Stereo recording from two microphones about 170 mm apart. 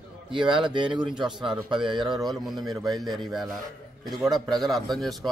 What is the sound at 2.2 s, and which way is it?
A man's voice, centre (ahead or behind).